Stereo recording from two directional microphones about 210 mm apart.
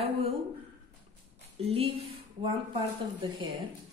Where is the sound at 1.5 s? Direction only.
30° right (ahead or behind).